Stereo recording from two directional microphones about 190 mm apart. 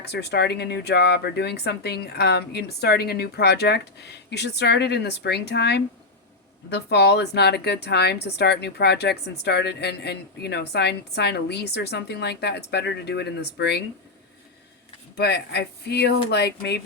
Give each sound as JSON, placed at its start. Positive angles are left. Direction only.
{"t": 0.0, "sound": "a woman's voice", "side_deg": 60}
{"t": 15.1, "sound": "a woman's voice", "side_deg": 60}